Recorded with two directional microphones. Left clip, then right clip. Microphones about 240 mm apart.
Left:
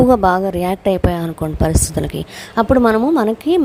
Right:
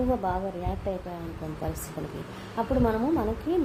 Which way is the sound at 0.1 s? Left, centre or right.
Left.